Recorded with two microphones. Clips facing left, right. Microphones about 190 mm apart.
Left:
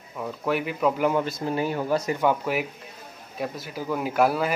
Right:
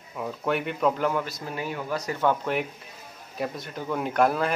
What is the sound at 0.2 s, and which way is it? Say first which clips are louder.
Speech: left 1 dB; centre (ahead or behind).